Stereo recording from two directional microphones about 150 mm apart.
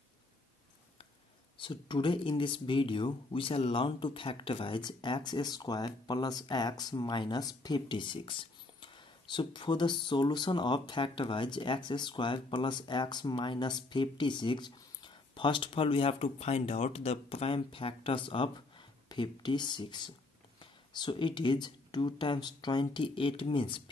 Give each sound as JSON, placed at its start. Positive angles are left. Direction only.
{"t": 1.6, "sound": "speech", "side_deg": 35}